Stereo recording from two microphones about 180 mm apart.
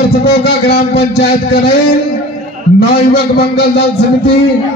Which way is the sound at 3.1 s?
60° left (ahead or behind).